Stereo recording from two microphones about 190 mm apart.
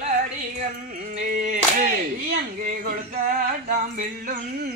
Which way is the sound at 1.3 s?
45° right (ahead or behind).